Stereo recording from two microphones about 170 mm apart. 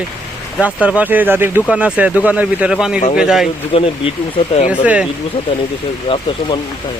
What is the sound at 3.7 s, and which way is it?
Speech, 30° left (ahead or behind).